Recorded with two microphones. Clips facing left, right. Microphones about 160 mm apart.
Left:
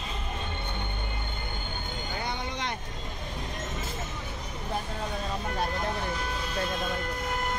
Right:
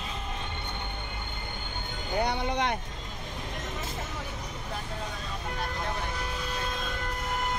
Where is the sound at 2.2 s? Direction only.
60° right (ahead or behind).